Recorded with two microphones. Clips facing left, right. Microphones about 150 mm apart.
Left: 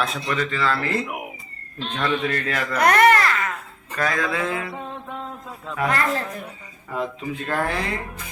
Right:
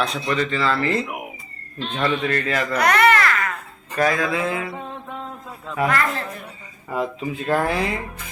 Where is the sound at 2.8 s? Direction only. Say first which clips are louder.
Left 2 dB; 50° left (ahead or behind).